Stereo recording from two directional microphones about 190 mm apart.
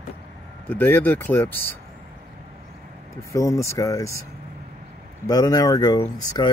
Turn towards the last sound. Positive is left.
turn(degrees=20)  # may be behind; listen again after turning